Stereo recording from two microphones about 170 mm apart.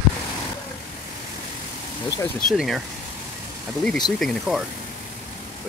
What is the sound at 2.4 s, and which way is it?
Speech, centre (ahead or behind).